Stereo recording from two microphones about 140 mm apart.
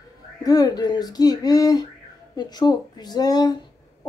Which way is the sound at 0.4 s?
25° left (ahead or behind).